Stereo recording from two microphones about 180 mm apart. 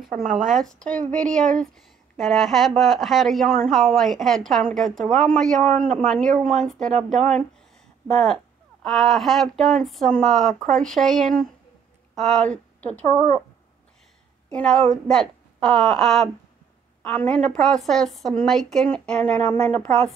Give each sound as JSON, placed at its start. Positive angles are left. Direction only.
{"t": 0.1, "sound": "a woman's voice", "side_deg": 0}
{"t": 14.5, "sound": "a woman's voice", "side_deg": 5}